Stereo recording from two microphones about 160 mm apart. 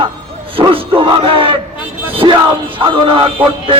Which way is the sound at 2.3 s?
30° right (ahead or behind).